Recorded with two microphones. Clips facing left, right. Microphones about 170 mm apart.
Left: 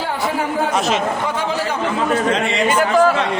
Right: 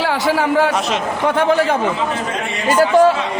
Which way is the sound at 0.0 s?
85° right.